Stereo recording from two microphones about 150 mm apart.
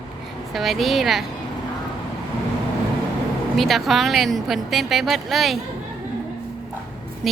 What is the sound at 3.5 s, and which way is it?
Speech, centre (ahead or behind).